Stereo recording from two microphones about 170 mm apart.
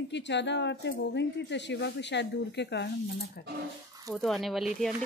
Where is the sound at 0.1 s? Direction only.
90° left.